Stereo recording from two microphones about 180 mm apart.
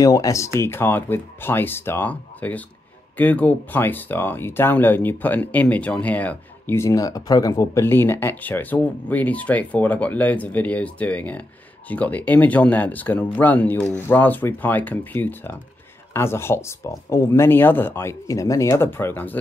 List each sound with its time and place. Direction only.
0.0 s speech: 20° left (ahead or behind)